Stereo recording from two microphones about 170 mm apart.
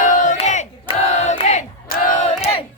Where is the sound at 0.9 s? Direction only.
40° left (ahead or behind).